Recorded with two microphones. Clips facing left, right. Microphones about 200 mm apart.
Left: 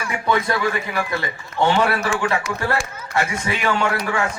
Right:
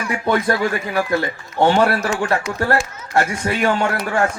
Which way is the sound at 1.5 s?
45° right (ahead or behind).